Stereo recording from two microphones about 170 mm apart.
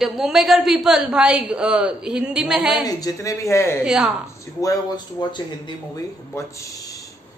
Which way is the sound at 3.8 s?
5° right (ahead or behind).